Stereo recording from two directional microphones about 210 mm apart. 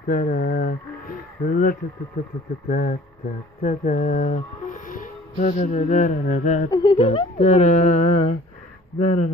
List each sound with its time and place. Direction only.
0.0 s speech: 40° left (ahead or behind)
6.7 s speech: 20° left (ahead or behind)